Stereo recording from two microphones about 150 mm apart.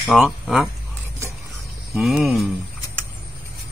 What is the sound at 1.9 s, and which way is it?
Speech, 5° right (ahead or behind).